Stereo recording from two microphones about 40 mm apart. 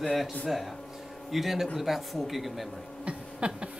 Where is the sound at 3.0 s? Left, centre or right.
Right.